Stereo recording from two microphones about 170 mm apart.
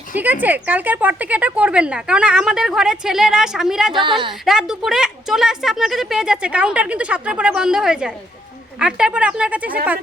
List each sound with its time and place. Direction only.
0.2 s speech: 10° right (ahead or behind)
3.9 s a woman's voice: 30° right (ahead or behind)
4.4 s speech: 5° right (ahead or behind)